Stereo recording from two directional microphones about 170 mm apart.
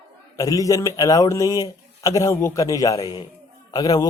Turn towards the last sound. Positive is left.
turn(degrees=20)  # may be behind; listen again after turning